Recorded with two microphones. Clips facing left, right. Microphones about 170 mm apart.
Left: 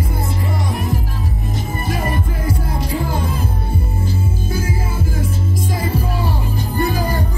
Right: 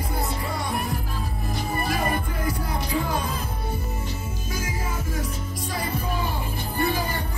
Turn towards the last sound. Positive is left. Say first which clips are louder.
# left 6 dB
turn(degrees=40)  # may be behind; listen again after turning